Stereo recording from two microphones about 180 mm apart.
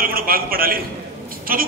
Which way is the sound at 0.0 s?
55° right (ahead or behind).